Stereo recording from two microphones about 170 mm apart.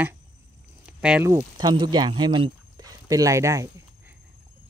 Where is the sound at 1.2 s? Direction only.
20° right (ahead or behind).